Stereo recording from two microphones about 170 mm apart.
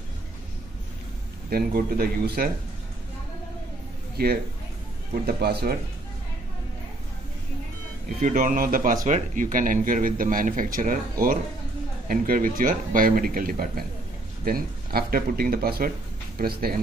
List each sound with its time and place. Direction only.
1.5 s speech: 65° right (ahead or behind)
5.2 s speech: 70° right (ahead or behind)
8.2 s speech: 50° right (ahead or behind)